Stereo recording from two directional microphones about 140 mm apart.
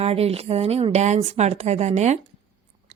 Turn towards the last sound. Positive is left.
turn(degrees=-60)  # may be behind; listen again after turning